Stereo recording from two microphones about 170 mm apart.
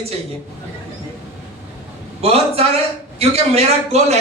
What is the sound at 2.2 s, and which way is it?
A man's voice, 35° right (ahead or behind).